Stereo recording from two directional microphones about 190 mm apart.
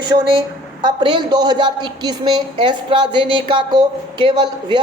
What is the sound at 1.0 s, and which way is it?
A woman's voice, 25° right (ahead or behind).